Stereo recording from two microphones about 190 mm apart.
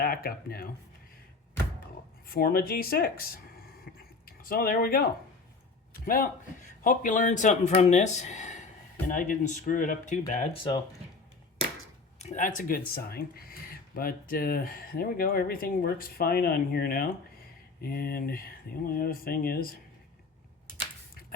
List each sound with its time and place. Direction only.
0.0 s speech: 50° left (ahead or behind)
2.2 s speech: 50° left (ahead or behind)
6.1 s a man's voice: 45° left (ahead or behind); by 10.8 s 30° left (ahead or behind)
12.2 s speech: 40° left (ahead or behind)